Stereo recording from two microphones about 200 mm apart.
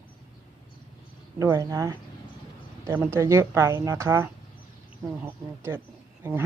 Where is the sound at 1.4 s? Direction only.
15° right (ahead or behind).